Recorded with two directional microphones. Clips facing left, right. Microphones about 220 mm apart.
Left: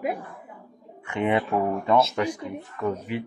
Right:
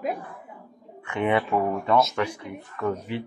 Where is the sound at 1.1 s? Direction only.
15° left (ahead or behind).